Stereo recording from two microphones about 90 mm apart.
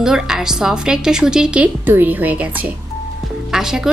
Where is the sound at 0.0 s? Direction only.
5° right (ahead or behind).